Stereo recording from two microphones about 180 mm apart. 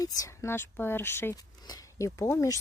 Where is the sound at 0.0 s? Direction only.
15° left (ahead or behind).